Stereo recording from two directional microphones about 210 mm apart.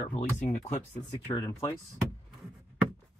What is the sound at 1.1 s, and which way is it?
Speech, 20° left (ahead or behind).